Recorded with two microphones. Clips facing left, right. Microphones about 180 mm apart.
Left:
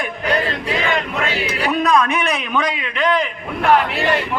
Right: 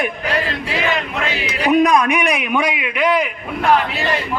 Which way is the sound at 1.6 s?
15° right (ahead or behind).